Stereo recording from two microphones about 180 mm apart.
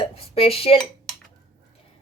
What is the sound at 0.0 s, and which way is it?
Dishes, 35° left (ahead or behind).